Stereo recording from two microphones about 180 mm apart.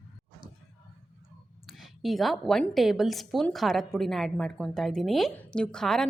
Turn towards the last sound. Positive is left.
turn(degrees=5)  # may be behind; listen again after turning